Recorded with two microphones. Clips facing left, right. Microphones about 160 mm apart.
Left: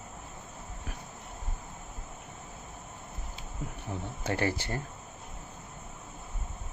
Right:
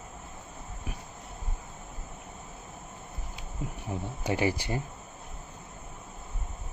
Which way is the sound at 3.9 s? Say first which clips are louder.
Right 2 dB; 20° right (ahead or behind).